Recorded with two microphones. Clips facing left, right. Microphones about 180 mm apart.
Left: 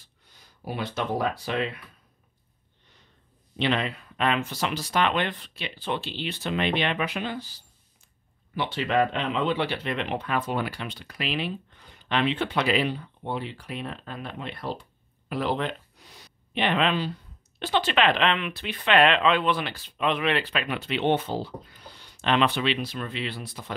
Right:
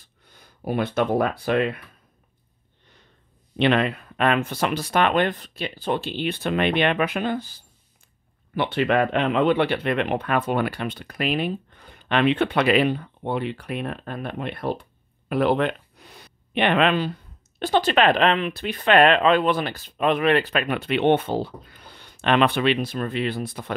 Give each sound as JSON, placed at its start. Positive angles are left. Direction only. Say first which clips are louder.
{"t": 0.0, "sound": "speech", "louder": "right 5 dB", "side_deg": -55}
{"t": 3.5, "sound": "speech", "louder": "right 6 dB", "side_deg": -60}